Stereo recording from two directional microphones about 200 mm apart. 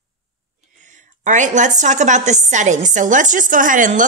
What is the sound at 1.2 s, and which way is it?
A woman's voice, 40° right (ahead or behind).